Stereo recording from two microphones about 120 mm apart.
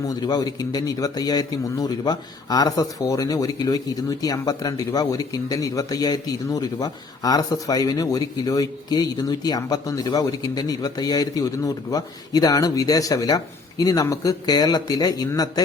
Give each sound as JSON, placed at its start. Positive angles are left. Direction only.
{"t": 0.0, "sound": "a man's voice", "side_deg": 30}